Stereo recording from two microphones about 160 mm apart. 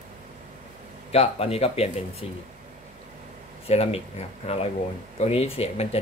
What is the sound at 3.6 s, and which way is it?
Speech, 40° left (ahead or behind).